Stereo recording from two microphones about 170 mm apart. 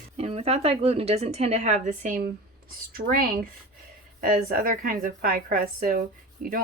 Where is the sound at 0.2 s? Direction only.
35° right (ahead or behind).